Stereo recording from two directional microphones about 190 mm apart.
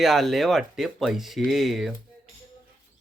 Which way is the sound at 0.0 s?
Centre (ahead or behind).